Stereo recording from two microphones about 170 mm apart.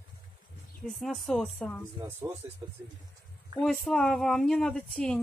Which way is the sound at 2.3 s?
20° right (ahead or behind).